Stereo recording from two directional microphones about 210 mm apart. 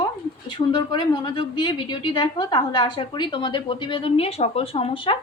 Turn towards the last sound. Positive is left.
turn(degrees=25)  # may be behind; listen again after turning